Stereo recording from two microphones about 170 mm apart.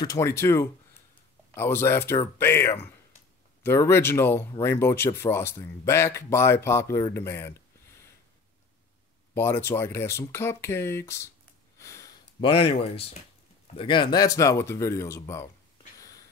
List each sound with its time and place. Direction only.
0.0 s speech: 20° left (ahead or behind)
9.3 s speech: 15° left (ahead or behind)
11.8 s a sound: 20° left (ahead or behind)
12.4 s speech: 35° left (ahead or behind); by 15.5 s 15° left (ahead or behind)